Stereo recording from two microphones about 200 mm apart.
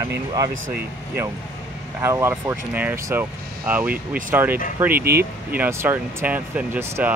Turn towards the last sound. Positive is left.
turn(degrees=-10)  # may be behind; listen again after turning